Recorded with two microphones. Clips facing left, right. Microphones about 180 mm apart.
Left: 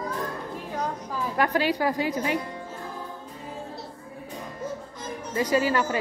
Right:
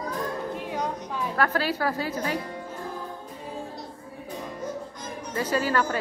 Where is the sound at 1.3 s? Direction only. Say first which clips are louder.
Left 2 dB; 15° left (ahead or behind).